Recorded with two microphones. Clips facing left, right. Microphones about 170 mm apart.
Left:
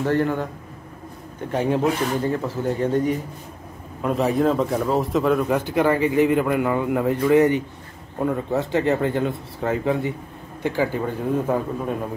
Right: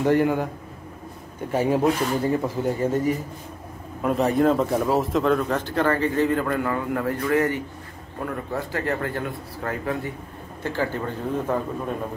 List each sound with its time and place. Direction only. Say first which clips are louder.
0.0 s speech: right 1 dB; 15° right (ahead or behind)
1.5 s speech: even; 5° right (ahead or behind)